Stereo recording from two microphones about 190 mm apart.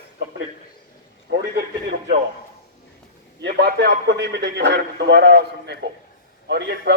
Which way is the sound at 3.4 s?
55° right (ahead or behind).